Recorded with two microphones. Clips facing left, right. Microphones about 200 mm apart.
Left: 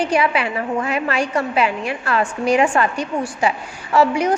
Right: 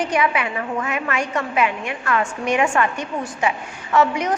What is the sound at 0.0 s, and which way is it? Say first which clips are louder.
A woman's voice: left 2 dB; 30° left (ahead or behind).